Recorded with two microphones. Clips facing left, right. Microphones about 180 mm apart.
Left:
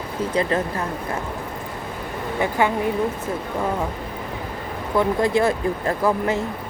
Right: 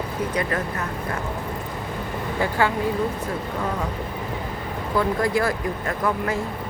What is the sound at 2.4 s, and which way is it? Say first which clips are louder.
Speech: left 2 dB; 20° left (ahead or behind).